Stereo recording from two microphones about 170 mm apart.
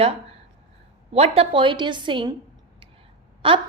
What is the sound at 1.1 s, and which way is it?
A woman's voice, 35° right (ahead or behind).